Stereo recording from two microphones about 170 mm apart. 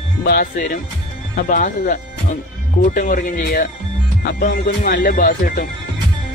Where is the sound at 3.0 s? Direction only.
55° left (ahead or behind).